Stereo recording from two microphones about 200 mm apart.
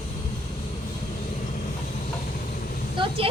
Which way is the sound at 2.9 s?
25° right (ahead or behind).